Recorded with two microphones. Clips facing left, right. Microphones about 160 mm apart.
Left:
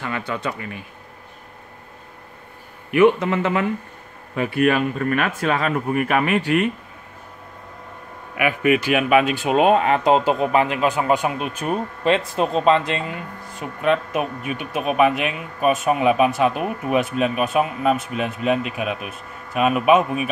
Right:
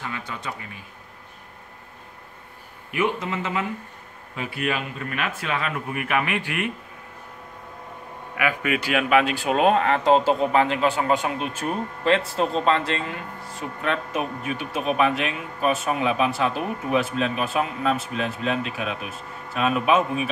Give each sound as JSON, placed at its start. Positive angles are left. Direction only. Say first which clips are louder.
{"t": 0.0, "sound": "a man's voice", "louder": "left 7 dB", "side_deg": 65}
{"t": 2.9, "sound": "a man's voice", "louder": "left 9 dB", "side_deg": 60}
{"t": 8.4, "sound": "speech", "louder": "left 6 dB", "side_deg": 20}